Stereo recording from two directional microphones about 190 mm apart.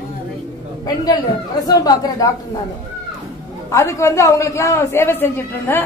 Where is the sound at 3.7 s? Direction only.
15° left (ahead or behind).